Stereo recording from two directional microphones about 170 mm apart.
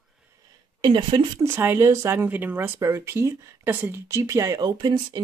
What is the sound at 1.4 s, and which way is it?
Speech, 15° right (ahead or behind).